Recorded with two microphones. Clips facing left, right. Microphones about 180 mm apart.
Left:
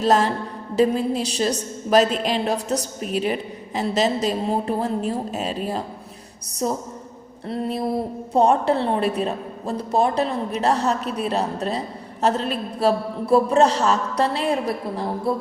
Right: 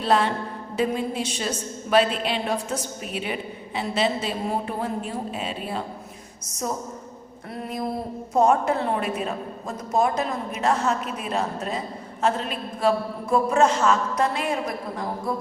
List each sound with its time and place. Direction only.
0.0 s a man's voice: 40° left (ahead or behind)
7.4 s a sound: 25° left (ahead or behind)
8.3 s a man's voice: 30° left (ahead or behind)